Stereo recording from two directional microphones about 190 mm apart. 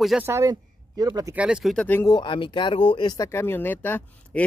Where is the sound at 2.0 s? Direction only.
25° left (ahead or behind); by 4.4 s 10° left (ahead or behind).